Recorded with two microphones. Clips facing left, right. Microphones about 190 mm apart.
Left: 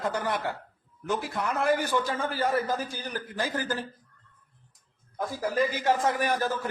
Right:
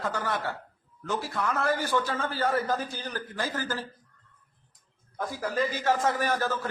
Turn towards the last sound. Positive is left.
turn(degrees=15)  # may be behind; listen again after turning